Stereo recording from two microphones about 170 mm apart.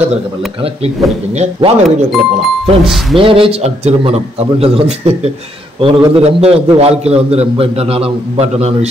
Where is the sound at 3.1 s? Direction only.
30° right (ahead or behind).